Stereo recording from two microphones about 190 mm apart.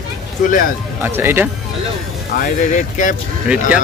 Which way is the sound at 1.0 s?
10° right (ahead or behind).